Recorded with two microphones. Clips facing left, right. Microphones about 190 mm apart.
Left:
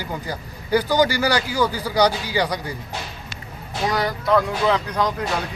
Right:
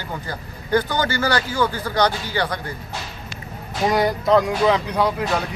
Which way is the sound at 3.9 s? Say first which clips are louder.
Right 3 dB; 20° right (ahead or behind).